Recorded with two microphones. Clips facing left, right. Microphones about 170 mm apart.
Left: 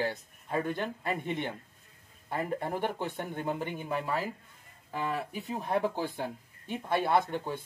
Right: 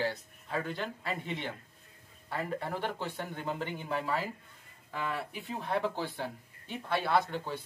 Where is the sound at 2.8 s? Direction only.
50° left (ahead or behind).